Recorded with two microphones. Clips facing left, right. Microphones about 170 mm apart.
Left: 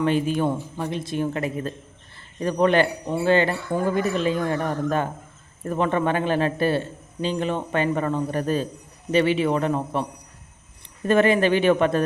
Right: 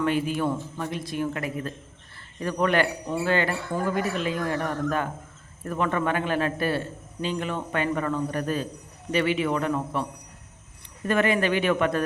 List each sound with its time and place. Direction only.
0.0 s a man's voice: 25° left (ahead or behind)